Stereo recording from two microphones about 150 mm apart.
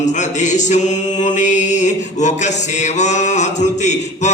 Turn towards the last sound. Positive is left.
turn(degrees=50)  # may be behind; listen again after turning